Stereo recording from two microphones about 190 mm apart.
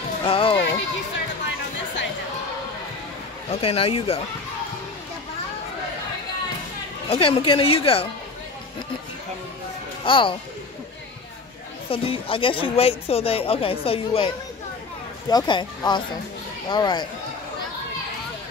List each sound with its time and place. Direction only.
0.2 s a sound: 30° left (ahead or behind)
3.4 s speech: 30° left (ahead or behind)
7.1 s speech: 30° left (ahead or behind)
10.0 s speech: 25° left (ahead or behind)
11.9 s speech: 30° left (ahead or behind)